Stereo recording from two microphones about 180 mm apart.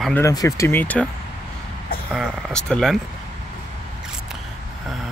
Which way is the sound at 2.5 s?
5° left (ahead or behind).